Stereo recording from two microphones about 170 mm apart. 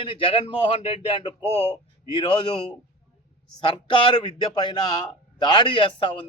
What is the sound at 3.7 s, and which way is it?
A man's voice, 30° left (ahead or behind).